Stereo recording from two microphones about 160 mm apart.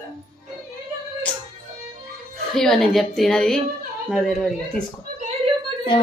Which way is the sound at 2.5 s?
5° left (ahead or behind).